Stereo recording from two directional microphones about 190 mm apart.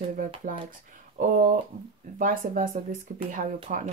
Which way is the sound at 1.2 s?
45° right (ahead or behind).